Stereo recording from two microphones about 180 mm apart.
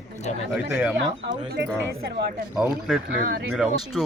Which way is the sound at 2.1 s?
60° right (ahead or behind).